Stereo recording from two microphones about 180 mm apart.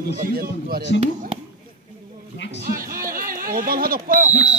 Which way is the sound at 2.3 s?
75° left (ahead or behind).